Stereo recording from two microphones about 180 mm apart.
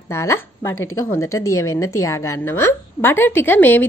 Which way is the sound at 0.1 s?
15° left (ahead or behind).